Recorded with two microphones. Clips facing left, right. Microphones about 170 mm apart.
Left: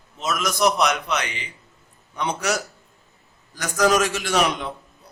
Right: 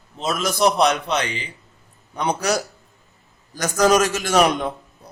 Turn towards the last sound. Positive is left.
turn(degrees=-45)  # may be behind; listen again after turning